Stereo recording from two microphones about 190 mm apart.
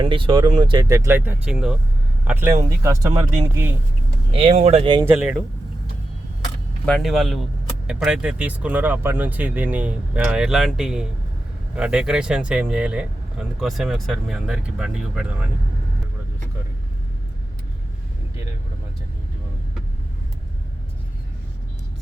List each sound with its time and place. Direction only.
0.0 s speech: 25° right (ahead or behind)
4.4 s speech: 35° right (ahead or behind)
5.0 s speech: 5° right (ahead or behind)
6.8 s speech: centre (ahead or behind)